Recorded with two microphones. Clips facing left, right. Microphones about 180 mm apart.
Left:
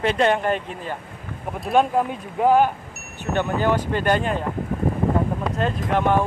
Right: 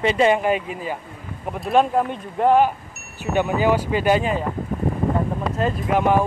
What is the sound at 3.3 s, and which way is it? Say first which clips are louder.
Speech: right 2 dB; 10° right (ahead or behind).